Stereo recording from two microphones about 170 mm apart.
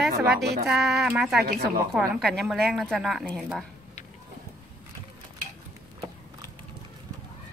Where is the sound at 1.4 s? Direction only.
70° right (ahead or behind).